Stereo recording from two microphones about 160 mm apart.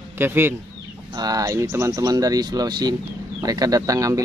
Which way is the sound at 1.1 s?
25° right (ahead or behind).